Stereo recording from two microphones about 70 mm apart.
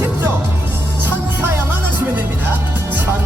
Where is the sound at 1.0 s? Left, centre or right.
Right.